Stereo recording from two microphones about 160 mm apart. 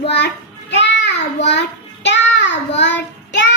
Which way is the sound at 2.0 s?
90° left.